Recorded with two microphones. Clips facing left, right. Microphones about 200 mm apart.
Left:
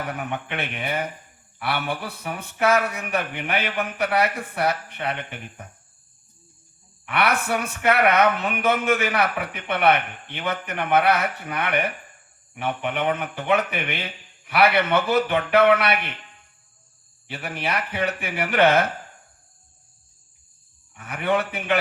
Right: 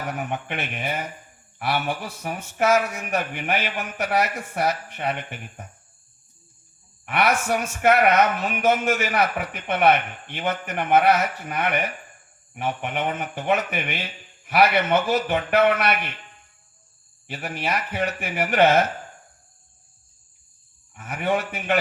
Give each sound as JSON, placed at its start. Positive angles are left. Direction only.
{"t": 0.1, "sound": "speech", "side_deg": 60}
{"t": 1.6, "sound": "speech", "side_deg": 60}
{"t": 7.1, "sound": "a man's voice", "side_deg": 60}
{"t": 17.3, "sound": "speech", "side_deg": 60}
{"t": 21.0, "sound": "speech", "side_deg": 60}